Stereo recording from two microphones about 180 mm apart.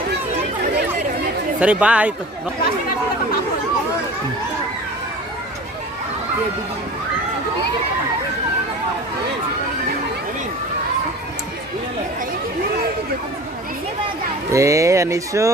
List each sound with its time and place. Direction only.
1.5 s speech: 5° right (ahead or behind)
14.5 s speech: 15° right (ahead or behind)